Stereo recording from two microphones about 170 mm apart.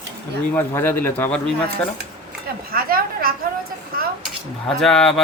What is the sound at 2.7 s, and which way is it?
Speech, 60° right (ahead or behind).